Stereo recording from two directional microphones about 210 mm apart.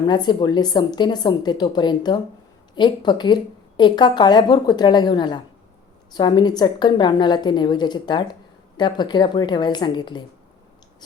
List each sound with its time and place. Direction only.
0.0 s speech: 20° left (ahead or behind)